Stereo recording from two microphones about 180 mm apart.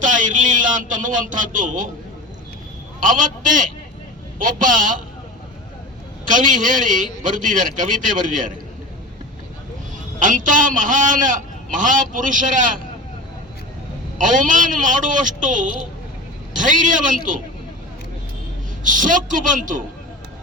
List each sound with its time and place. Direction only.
0.0 s speech: 45° right (ahead or behind)
3.0 s a man's voice: 45° right (ahead or behind)
6.2 s a man's voice: 45° right (ahead or behind)
10.2 s a man's voice: 45° right (ahead or behind)
14.2 s a man's voice: 45° right (ahead or behind)
16.6 s a man's voice: 45° right (ahead or behind)
18.8 s a man's voice: 45° right (ahead or behind)